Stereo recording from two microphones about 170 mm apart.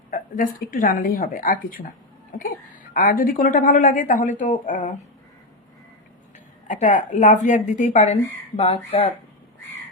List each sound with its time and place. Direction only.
0.1 s a woman's voice: 50° left (ahead or behind)
2.9 s a woman's voice: 55° left (ahead or behind)
6.7 s a woman's voice: 50° left (ahead or behind)